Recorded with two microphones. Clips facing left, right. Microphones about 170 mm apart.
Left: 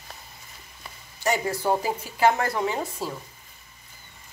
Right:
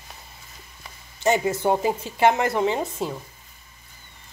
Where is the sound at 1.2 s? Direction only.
20° right (ahead or behind).